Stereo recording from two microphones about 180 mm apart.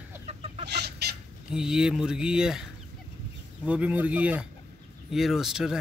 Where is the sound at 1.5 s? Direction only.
5° right (ahead or behind).